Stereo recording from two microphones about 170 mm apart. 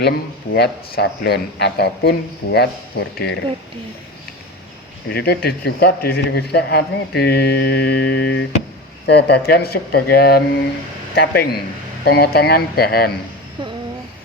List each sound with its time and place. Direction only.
0.5 s a man's voice: 75° left (ahead or behind)
5.0 s a man's voice: 70° left (ahead or behind)
13.6 s a sound: 30° right (ahead or behind)